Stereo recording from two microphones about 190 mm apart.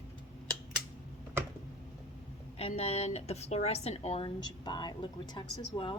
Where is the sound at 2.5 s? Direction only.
30° left (ahead or behind).